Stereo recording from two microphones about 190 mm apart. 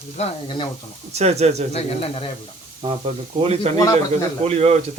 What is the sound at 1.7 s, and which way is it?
Speech, 30° left (ahead or behind).